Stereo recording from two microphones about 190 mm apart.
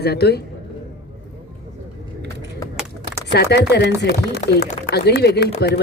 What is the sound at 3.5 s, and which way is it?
Speech, 60° left (ahead or behind).